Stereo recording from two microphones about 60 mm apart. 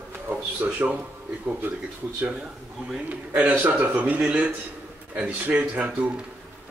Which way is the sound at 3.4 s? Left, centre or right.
Right.